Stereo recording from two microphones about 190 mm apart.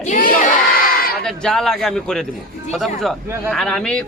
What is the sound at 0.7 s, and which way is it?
Crowd, 50° left (ahead or behind).